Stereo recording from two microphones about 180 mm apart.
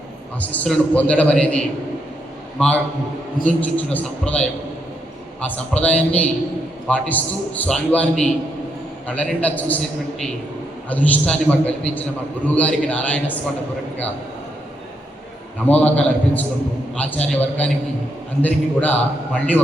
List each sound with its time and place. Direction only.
0.4 s a man's voice: 5° left (ahead or behind)
15.6 s a man's voice: 10° left (ahead or behind)